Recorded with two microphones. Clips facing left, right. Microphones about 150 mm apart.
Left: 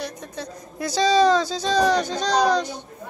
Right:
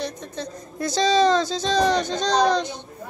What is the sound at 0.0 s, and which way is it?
Speech, 10° left (ahead or behind).